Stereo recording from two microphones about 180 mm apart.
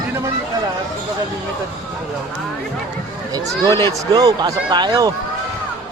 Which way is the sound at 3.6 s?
25° right (ahead or behind).